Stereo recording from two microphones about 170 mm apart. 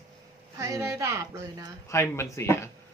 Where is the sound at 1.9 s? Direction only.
15° left (ahead or behind).